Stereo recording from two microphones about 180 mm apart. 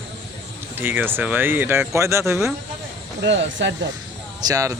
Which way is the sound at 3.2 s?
85° right.